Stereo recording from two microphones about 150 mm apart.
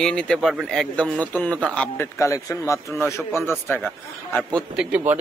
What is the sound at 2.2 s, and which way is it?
Speech, 20° left (ahead or behind).